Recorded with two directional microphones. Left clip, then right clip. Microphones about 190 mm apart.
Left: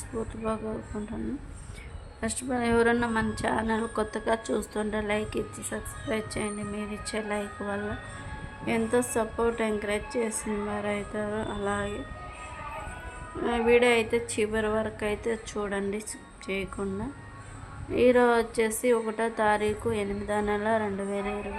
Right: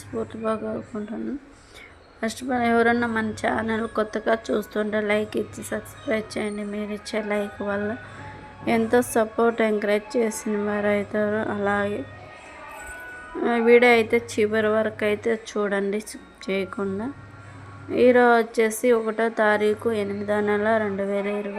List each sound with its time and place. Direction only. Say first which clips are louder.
0.2 s a woman's voice: right 5 dB; 15° right (ahead or behind)
2.2 s a woman's voice: right 6 dB; 10° right (ahead or behind)
13.4 s a woman's voice: right 6 dB; 20° right (ahead or behind)